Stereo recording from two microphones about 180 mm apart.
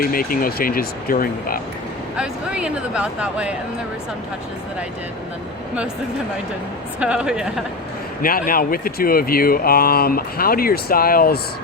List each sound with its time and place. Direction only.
0.0 s speech: 55° left (ahead or behind)
2.1 s speech: 5° right (ahead or behind)
7.0 s speech: 5° right (ahead or behind)
8.2 s speech: 50° left (ahead or behind)